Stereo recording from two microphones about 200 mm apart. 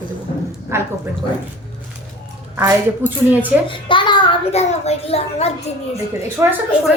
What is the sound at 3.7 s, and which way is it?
A child's voice, 25° left (ahead or behind).